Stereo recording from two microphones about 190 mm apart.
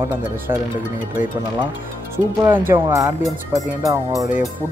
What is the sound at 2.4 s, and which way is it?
Speech, 10° right (ahead or behind).